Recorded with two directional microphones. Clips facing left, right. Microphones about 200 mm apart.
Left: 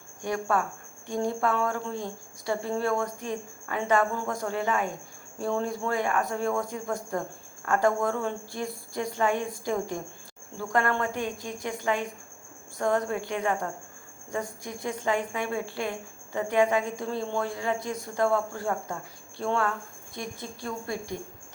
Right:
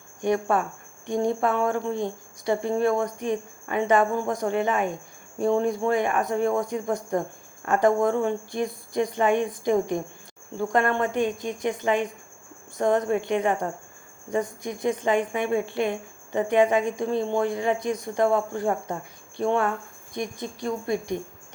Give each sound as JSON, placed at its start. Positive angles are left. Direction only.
{"t": 0.2, "sound": "speech", "side_deg": -20}